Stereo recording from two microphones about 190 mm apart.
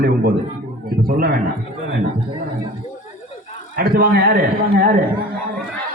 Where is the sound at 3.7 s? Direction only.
50° right (ahead or behind).